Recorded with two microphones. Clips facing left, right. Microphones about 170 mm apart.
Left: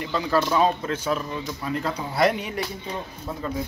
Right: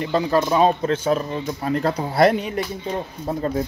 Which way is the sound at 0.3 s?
25° right (ahead or behind).